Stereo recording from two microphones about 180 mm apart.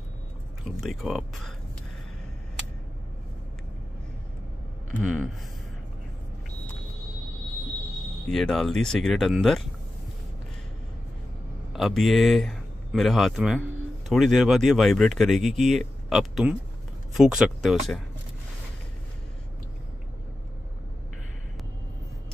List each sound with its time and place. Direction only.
0.7 s speech: centre (ahead or behind)
5.0 s speech: centre (ahead or behind)
8.3 s speech: centre (ahead or behind)
11.7 s speech: centre (ahead or behind)